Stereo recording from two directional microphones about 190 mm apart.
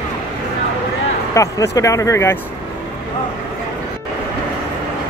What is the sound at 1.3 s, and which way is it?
Speech, 15° left (ahead or behind).